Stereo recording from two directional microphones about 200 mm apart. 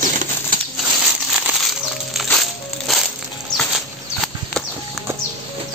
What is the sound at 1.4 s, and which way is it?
Music, centre (ahead or behind).